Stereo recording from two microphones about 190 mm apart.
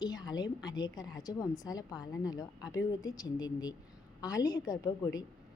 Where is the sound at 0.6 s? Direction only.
20° left (ahead or behind).